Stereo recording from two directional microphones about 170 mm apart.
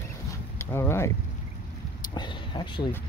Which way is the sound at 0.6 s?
15° left (ahead or behind).